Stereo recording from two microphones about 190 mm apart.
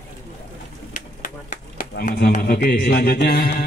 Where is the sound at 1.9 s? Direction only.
55° left (ahead or behind).